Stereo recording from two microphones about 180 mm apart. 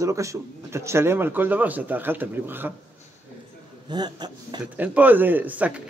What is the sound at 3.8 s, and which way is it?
Speech, 25° right (ahead or behind).